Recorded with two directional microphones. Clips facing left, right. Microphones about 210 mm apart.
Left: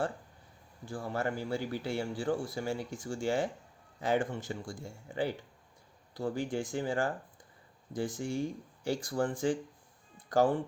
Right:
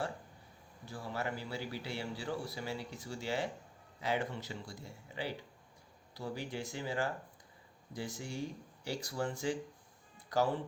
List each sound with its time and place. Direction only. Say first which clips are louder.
0.9 s speech: left 5 dB; 50° left (ahead or behind)